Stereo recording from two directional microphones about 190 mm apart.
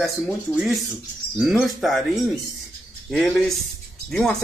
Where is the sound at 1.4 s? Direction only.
Centre (ahead or behind).